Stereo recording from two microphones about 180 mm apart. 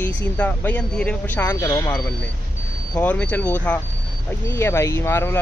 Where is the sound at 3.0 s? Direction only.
10° left (ahead or behind).